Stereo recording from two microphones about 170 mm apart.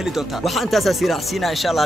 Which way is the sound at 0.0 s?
Centre (ahead or behind).